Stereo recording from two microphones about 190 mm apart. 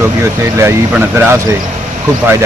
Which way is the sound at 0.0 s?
15° right (ahead or behind).